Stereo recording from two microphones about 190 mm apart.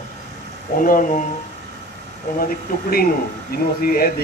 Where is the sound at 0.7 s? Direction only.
45° left (ahead or behind).